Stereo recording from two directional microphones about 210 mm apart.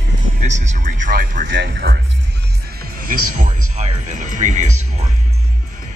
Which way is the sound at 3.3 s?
35° right (ahead or behind).